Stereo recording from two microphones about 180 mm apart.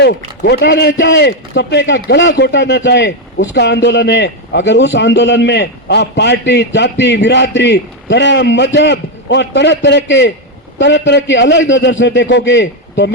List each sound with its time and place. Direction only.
0.4 s a man's voice: 70° left (ahead or behind)